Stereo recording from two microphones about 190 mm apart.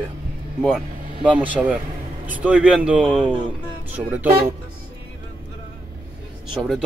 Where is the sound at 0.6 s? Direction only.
5° right (ahead or behind).